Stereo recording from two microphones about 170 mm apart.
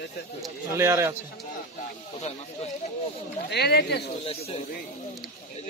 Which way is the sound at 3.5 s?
75° left (ahead or behind).